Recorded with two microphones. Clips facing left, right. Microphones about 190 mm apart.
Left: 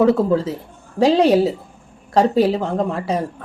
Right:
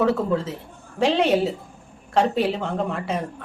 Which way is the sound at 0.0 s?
35° left (ahead or behind).